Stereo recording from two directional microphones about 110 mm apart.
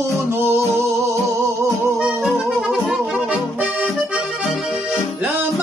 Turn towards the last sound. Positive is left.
turn(degrees=-10)  # may be behind; listen again after turning